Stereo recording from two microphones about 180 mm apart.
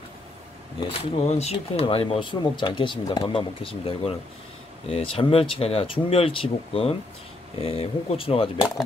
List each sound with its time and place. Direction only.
0.7 s speech: 30° left (ahead or behind)